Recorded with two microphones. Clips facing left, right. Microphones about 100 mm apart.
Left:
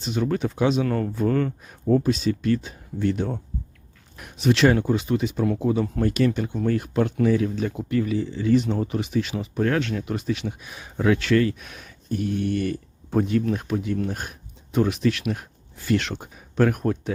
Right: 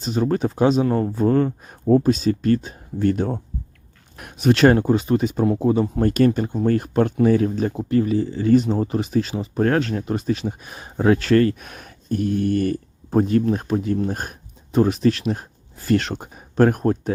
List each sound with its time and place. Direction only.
0.0 s speech: 40° right (ahead or behind)
0.9 s speech: 25° right (ahead or behind)